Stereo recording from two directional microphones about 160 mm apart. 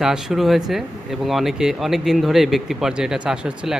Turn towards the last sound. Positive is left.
turn(degrees=-5)  # may be behind; listen again after turning